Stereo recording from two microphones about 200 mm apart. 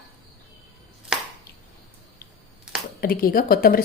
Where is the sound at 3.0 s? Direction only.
45° left (ahead or behind).